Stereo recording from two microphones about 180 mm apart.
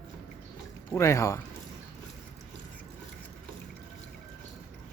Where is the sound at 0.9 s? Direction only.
15° left (ahead or behind).